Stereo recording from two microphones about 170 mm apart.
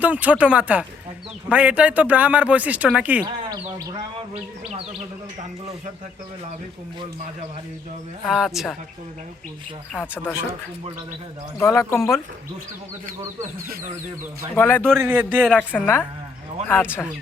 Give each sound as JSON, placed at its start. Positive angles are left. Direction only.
{"t": 0.0, "sound": "speech", "side_deg": -10}
{"t": 8.3, "sound": "a woman's voice", "side_deg": 0}
{"t": 9.9, "sound": "a woman's voice", "side_deg": 10}
{"t": 11.6, "sound": "a woman's voice", "side_deg": 15}
{"t": 14.5, "sound": "a woman's voice", "side_deg": 10}
{"t": 14.9, "sound": "speech", "side_deg": -10}
{"t": 15.4, "sound": "a woman's voice", "side_deg": 5}